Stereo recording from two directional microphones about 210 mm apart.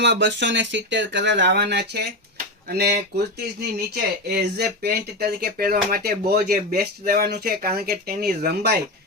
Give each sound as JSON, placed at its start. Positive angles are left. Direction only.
{"t": 0.0, "sound": "speech", "side_deg": -55}